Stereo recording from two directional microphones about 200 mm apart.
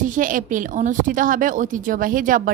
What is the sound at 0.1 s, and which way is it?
A woman's voice, 40° right (ahead or behind).